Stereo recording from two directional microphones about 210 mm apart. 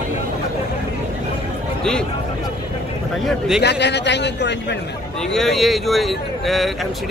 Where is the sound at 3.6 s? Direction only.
55° left (ahead or behind).